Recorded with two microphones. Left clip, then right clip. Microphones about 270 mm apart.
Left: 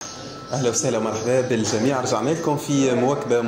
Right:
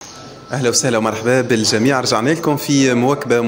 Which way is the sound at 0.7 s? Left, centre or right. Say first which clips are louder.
Right 6 dB; right.